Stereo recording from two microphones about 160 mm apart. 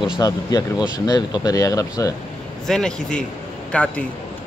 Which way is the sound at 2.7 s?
5° left (ahead or behind).